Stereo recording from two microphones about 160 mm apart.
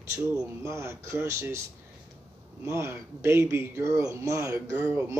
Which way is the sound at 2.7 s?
15° right (ahead or behind).